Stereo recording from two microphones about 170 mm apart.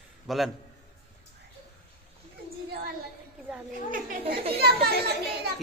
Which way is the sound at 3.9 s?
60° right (ahead or behind).